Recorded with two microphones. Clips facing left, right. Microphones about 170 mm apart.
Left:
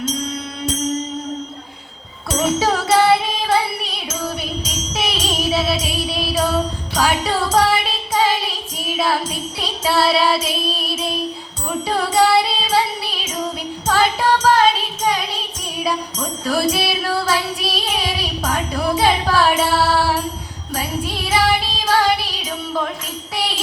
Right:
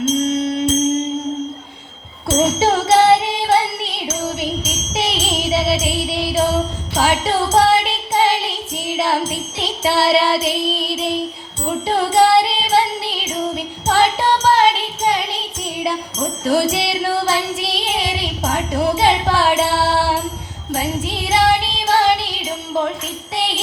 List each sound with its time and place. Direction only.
0.0 s music: 25° right (ahead or behind)
2.3 s music: 25° right (ahead or behind)
23.3 s jingle bell: 20° right (ahead or behind)